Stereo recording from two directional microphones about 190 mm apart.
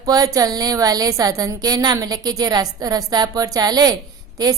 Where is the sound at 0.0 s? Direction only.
20° right (ahead or behind).